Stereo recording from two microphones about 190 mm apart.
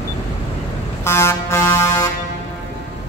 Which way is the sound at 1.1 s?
15° left (ahead or behind).